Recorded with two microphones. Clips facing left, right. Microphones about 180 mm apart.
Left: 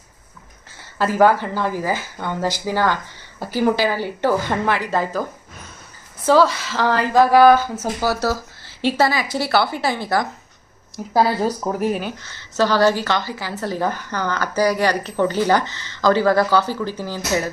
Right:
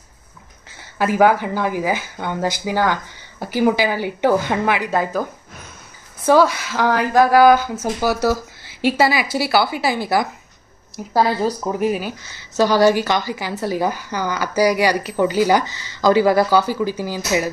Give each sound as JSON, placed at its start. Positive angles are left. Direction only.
{"t": 0.9, "sound": "speech", "side_deg": -15}
{"t": 6.2, "sound": "speech", "side_deg": -15}
{"t": 8.8, "sound": "speech", "side_deg": -5}
{"t": 11.1, "sound": "speech", "side_deg": 5}